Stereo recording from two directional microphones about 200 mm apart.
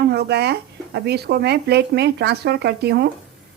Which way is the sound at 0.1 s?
55° right (ahead or behind).